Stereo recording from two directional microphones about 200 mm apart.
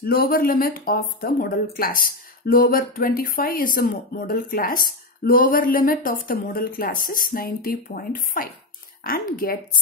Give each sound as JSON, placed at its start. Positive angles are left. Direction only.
{"t": 0.0, "sound": "speech", "side_deg": 50}